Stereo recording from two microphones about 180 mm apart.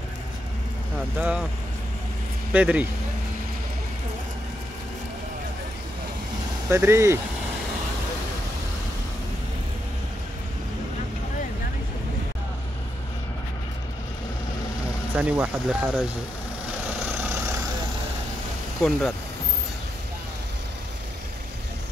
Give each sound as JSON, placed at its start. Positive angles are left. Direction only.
{"t": 2.5, "sound": "speech", "side_deg": -5}
{"t": 6.7, "sound": "speech", "side_deg": -15}
{"t": 15.1, "sound": "speech", "side_deg": -5}
{"t": 18.8, "sound": "speech", "side_deg": 0}